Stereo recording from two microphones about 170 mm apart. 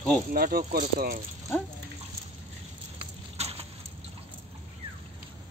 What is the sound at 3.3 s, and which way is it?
Keys jangling, 40° right (ahead or behind).